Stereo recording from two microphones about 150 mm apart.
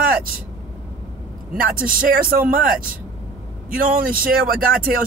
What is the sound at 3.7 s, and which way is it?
Speech, 70° right (ahead or behind).